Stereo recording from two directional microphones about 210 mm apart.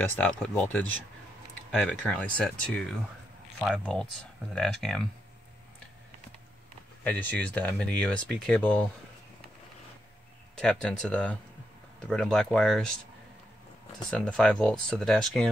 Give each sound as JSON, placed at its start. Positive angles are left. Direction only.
{"t": 0.4, "sound": "speech", "side_deg": 5}
{"t": 7.1, "sound": "speech", "side_deg": 10}
{"t": 10.5, "sound": "speech", "side_deg": 5}
{"t": 14.1, "sound": "speech", "side_deg": 5}